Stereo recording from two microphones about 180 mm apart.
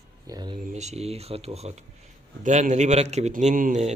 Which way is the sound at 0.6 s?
40° right (ahead or behind).